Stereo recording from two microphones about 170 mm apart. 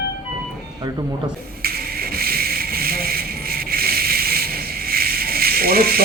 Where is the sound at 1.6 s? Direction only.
65° right (ahead or behind).